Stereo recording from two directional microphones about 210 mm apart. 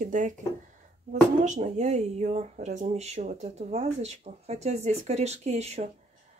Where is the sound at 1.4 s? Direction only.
35° right (ahead or behind).